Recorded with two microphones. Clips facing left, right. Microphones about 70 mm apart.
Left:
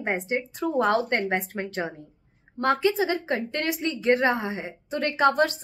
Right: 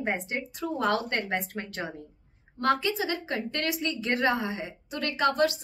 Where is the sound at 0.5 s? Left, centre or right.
Left.